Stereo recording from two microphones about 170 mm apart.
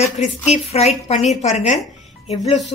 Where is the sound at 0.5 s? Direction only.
40° left (ahead or behind).